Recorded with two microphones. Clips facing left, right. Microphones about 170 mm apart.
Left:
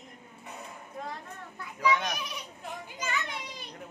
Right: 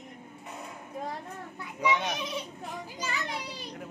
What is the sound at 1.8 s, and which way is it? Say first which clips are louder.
A child's voice: even; 20° right (ahead or behind).